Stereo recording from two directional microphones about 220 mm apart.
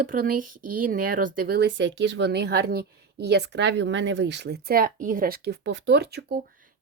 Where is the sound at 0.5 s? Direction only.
90° right.